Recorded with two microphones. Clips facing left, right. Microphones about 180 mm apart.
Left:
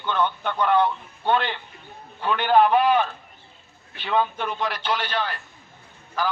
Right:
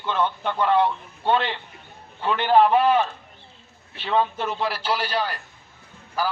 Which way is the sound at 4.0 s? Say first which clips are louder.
Right 1 dB; centre (ahead or behind).